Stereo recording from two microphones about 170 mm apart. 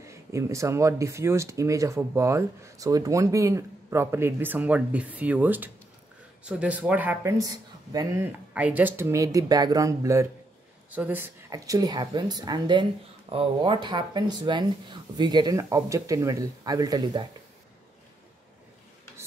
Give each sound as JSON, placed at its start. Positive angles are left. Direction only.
{"t": 0.0, "sound": "speech", "side_deg": -15}
{"t": 7.3, "sound": "speech", "side_deg": -20}